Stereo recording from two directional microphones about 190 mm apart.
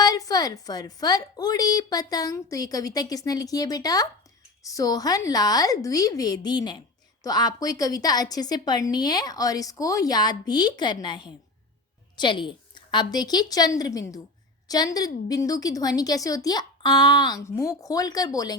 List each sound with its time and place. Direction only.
0.0 s a woman's voice: 20° left (ahead or behind)